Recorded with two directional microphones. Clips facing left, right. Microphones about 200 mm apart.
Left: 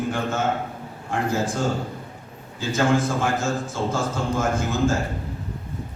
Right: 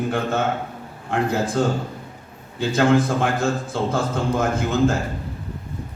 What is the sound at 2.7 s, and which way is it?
A man's voice, 60° right (ahead or behind).